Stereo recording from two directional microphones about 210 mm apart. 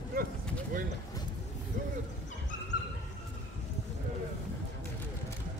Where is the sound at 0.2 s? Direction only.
45° right (ahead or behind).